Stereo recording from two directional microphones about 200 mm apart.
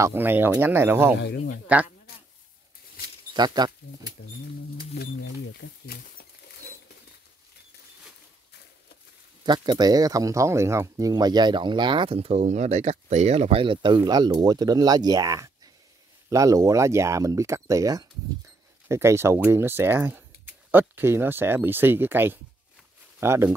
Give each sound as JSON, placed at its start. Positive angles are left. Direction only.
{"t": 0.0, "sound": "speech", "side_deg": -10}
{"t": 3.3, "sound": "speech", "side_deg": -20}
{"t": 4.9, "sound": "speech", "side_deg": 55}
{"t": 9.4, "sound": "speech", "side_deg": -20}